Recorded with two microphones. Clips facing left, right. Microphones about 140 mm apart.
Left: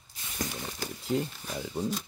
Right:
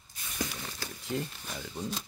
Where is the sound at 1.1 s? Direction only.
25° left (ahead or behind).